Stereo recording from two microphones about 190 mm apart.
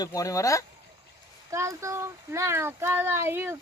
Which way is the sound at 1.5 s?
15° right (ahead or behind).